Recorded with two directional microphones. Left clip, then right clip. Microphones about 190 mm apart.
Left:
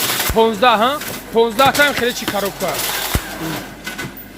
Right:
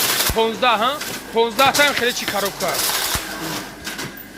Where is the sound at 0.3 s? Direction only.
35° left (ahead or behind); by 2.7 s 15° left (ahead or behind).